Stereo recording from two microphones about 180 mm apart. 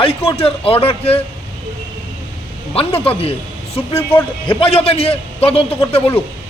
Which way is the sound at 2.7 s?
30° left (ahead or behind).